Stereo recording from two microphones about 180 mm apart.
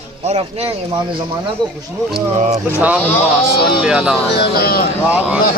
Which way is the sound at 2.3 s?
40° right (ahead or behind).